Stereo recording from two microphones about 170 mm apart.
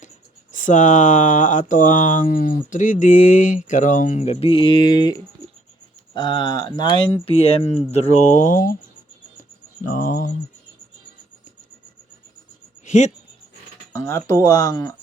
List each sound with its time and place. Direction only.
0.5 s speech: 45° left (ahead or behind)
9.8 s speech: 55° left (ahead or behind)
12.8 s a sound: 45° left (ahead or behind)
13.9 s speech: 15° left (ahead or behind)